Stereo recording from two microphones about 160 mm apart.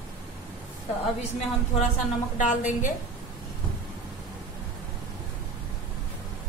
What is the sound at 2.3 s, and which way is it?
Speech, 50° left (ahead or behind).